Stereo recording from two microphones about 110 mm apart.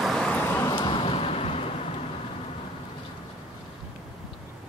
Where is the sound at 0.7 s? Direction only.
55° left (ahead or behind).